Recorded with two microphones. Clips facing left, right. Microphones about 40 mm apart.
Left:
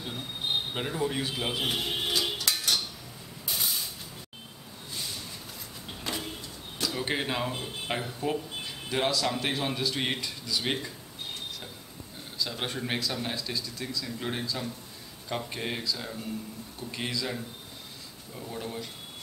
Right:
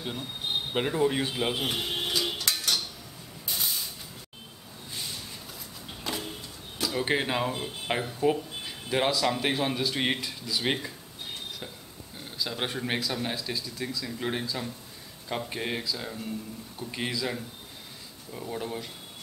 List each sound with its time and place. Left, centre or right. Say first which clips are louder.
0.7 s speech: right 5 dB; centre
1.6 s cutlery: even; centre
3.4 s a sound: even; centre
6.1 s vehicle: right 1 dB; centre
6.8 s speech: right 3 dB; centre
12.4 s speech: right 1 dB; centre